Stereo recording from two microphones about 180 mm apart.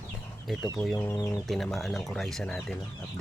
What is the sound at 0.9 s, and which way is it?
Speech, 15° left (ahead or behind).